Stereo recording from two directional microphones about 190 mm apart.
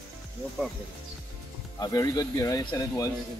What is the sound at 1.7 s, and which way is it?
Speech, 20° left (ahead or behind).